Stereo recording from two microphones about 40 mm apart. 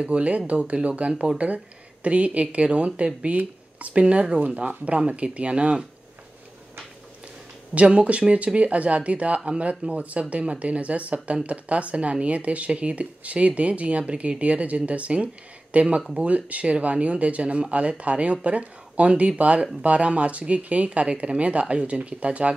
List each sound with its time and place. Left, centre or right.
0.0 s speech: right
4.0 s speech: right
7.7 s speech: right